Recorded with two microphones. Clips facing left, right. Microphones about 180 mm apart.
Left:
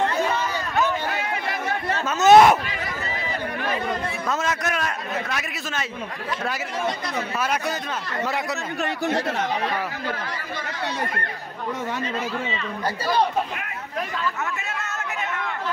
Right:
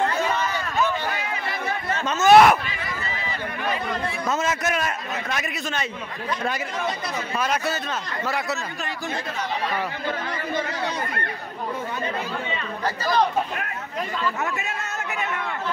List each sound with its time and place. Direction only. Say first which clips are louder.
2.1 s speech: left 1 dB; 20° left (ahead or behind)
4.3 s a man's voice: right 1 dB; centre (ahead or behind)
7.3 s speech: right 2 dB; 10° left (ahead or behind)
8.8 s speech: left 10 dB; 65° left (ahead or behind)